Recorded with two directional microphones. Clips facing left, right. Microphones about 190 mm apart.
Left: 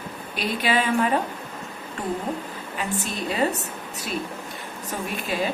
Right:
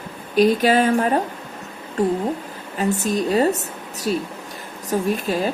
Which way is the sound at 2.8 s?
40° right (ahead or behind).